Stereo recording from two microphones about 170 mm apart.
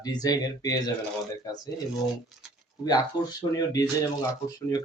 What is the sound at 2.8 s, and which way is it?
Speech, 25° left (ahead or behind).